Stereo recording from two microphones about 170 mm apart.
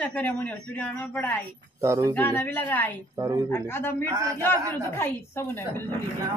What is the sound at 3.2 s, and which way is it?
Speech, 20° right (ahead or behind).